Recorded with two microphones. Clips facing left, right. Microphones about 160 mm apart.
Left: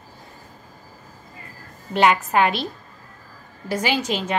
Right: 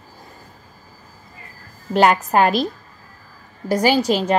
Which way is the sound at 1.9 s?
40° right (ahead or behind).